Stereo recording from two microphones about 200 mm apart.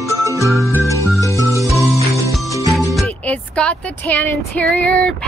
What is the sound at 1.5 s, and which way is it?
Music, 15° right (ahead or behind).